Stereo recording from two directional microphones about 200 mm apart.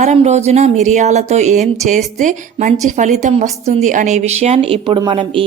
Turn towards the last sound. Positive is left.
turn(degrees=-25)  # may be behind; listen again after turning